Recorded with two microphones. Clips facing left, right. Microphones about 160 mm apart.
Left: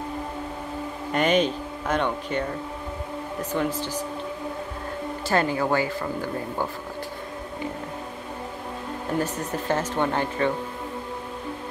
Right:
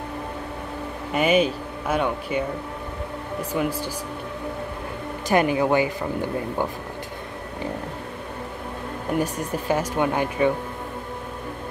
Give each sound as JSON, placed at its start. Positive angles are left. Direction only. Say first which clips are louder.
{"t": 1.1, "sound": "speech", "louder": "right 2 dB", "side_deg": -10}
{"t": 3.5, "sound": "speech", "louder": "right 1 dB", "side_deg": -10}
{"t": 5.3, "sound": "speech", "louder": "right 4 dB", "side_deg": -15}
{"t": 9.2, "sound": "speech", "louder": "right 2 dB", "side_deg": -10}